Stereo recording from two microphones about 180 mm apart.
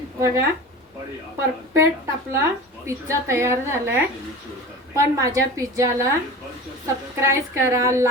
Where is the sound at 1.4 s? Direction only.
15° right (ahead or behind).